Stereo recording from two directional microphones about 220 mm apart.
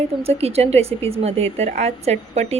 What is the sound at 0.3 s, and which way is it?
A woman's voice, 30° right (ahead or behind).